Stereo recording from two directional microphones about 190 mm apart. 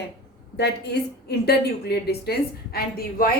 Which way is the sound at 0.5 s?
60° left (ahead or behind).